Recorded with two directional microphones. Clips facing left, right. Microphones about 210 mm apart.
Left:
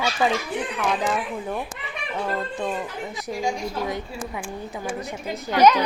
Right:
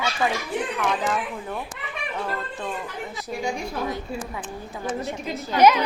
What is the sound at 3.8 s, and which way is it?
A woman's voice, 15° left (ahead or behind).